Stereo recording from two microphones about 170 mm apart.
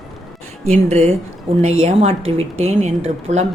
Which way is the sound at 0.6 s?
40° right (ahead or behind).